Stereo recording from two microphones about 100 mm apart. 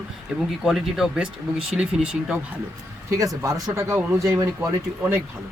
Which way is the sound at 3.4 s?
35° right (ahead or behind).